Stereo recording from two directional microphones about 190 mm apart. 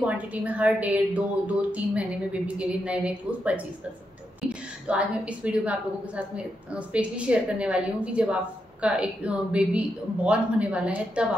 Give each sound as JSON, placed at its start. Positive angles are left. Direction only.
{"t": 0.0, "sound": "a woman's voice", "side_deg": -5}